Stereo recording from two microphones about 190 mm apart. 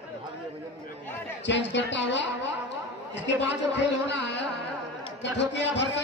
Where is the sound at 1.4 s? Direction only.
70° left (ahead or behind).